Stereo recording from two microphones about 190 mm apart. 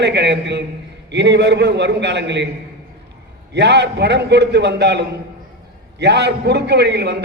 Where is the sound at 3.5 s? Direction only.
65° right (ahead or behind).